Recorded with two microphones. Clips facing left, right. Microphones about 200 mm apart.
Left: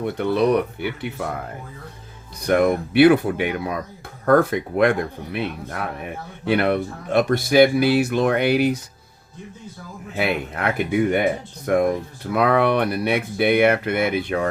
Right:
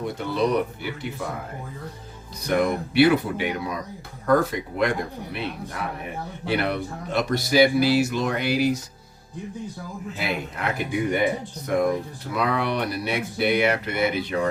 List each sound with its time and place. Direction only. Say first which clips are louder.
0.2 s speech: left 5 dB; 60° left (ahead or behind)
2.5 s speech: left 5 dB; 55° left (ahead or behind)
10.2 s speech: left 6 dB; 55° left (ahead or behind)